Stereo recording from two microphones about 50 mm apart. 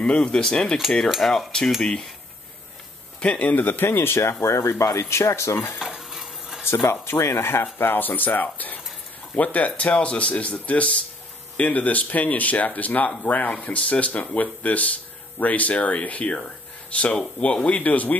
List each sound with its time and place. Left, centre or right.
0.0 s speech: centre
1.1 s cutlery: centre
1.7 s speech: centre
3.2 s speech: left
4.2 s speech: left
5.8 s stir: centre
6.6 s speech: left
7.8 s speech: left